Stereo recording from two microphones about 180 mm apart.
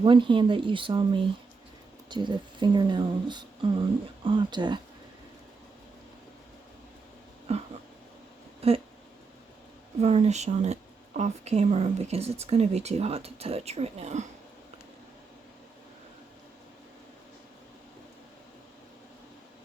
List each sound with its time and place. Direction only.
0.0 s speech: 25° right (ahead or behind)
7.5 s speech: 35° right (ahead or behind)
10.0 s speech: 35° right (ahead or behind)